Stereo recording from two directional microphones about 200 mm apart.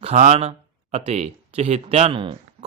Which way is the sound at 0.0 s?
35° right (ahead or behind).